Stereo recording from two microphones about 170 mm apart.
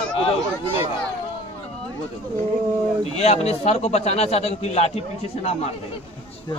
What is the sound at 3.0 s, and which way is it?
A man's voice, 40° left (ahead or behind).